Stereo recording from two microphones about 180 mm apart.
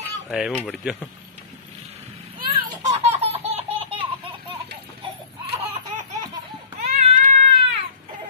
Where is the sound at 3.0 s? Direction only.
35° right (ahead or behind).